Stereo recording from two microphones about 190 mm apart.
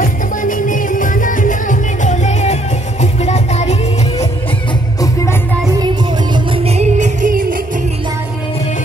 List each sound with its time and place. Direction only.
0.0 s music: 45° left (ahead or behind)
6.3 s music: 30° right (ahead or behind); by 7.6 s 45° right (ahead or behind)